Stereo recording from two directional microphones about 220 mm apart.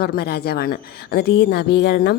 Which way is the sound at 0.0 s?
45° left (ahead or behind).